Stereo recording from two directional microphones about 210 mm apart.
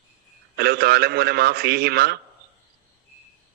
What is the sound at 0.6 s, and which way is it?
A man's voice, 50° right (ahead or behind).